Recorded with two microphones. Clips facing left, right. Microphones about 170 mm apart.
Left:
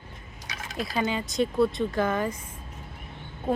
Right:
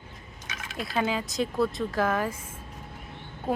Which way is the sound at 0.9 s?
Centre (ahead or behind).